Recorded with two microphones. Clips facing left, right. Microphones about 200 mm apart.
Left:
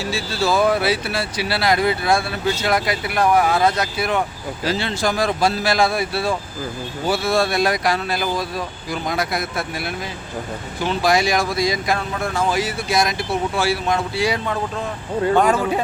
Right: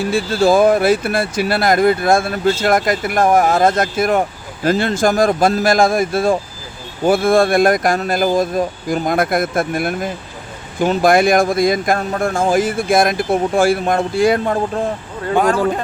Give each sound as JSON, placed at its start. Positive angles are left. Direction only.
{"t": 0.0, "sound": "speech", "side_deg": -55}
{"t": 15.3, "sound": "speech", "side_deg": -5}